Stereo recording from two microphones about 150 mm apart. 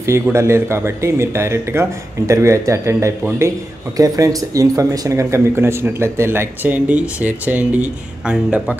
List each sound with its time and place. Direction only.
0.0 s speech: 20° right (ahead or behind)